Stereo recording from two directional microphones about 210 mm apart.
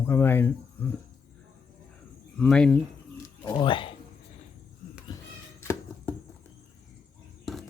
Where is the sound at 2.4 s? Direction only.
5° left (ahead or behind).